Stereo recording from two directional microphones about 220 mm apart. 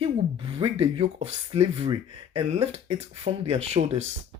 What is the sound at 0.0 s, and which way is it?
Speech, 25° right (ahead or behind).